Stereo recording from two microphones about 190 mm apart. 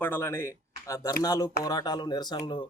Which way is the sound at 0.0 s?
10° left (ahead or behind).